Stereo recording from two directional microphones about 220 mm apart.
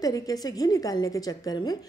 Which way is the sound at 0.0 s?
15° left (ahead or behind).